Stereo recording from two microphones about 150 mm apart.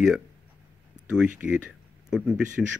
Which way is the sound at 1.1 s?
5° right (ahead or behind).